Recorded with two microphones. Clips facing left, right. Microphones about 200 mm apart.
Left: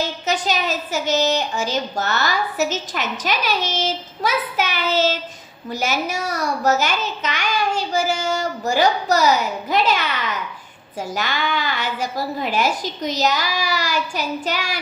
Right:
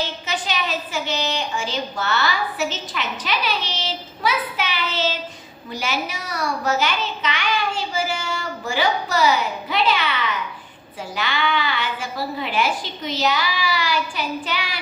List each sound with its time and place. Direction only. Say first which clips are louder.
0.0 s a woman's voice: left 4 dB; 45° left (ahead or behind)